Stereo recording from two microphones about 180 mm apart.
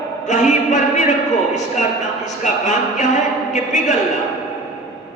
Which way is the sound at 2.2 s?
40° left (ahead or behind).